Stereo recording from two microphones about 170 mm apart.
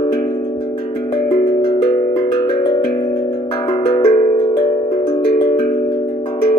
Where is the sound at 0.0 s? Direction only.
25° left (ahead or behind).